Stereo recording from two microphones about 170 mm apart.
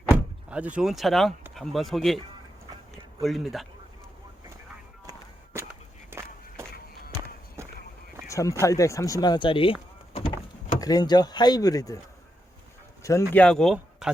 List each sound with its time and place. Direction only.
0.5 s speech: 5° right (ahead or behind)
6.1 s walk: 15° right (ahead or behind)
6.7 s music: 60° left (ahead or behind)
8.3 s speech: 20° left (ahead or behind)
10.1 s door: 35° left (ahead or behind)
10.8 s speech: 20° left (ahead or behind)
13.0 s a sound: 20° left (ahead or behind)
13.3 s speech: 5° left (ahead or behind)